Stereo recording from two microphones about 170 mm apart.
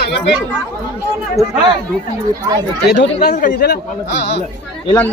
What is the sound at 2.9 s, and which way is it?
Speech, 90° left.